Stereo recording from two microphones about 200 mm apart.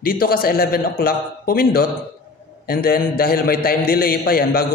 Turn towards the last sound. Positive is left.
turn(degrees=50)  # may be behind; listen again after turning